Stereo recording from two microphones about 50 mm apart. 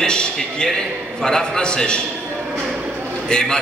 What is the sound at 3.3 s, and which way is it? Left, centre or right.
Speech, centre.